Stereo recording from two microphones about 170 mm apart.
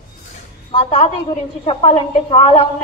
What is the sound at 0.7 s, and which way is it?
A woman's voice, 35° left (ahead or behind).